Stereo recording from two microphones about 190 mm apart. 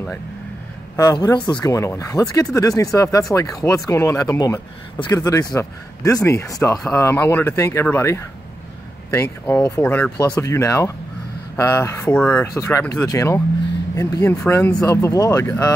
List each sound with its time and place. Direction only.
0.9 s speech: 20° left (ahead or behind)